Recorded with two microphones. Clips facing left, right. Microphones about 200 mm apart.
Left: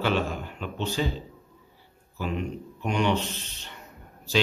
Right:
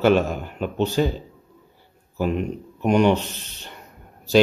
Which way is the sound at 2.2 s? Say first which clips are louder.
Right 7 dB; 45° right (ahead or behind).